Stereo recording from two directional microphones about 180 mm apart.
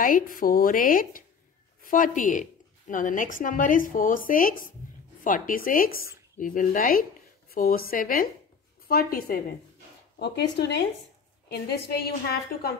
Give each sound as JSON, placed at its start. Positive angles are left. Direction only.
{"t": 0.0, "sound": "a woman's voice", "side_deg": 50}
{"t": 10.1, "sound": "a woman's voice", "side_deg": 65}